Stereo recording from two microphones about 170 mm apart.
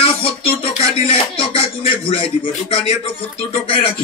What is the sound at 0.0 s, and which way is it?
Music, 35° left (ahead or behind).